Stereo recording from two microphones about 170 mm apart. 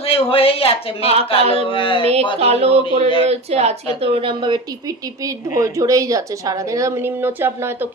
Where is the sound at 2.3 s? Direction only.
35° right (ahead or behind); by 7.9 s 15° right (ahead or behind).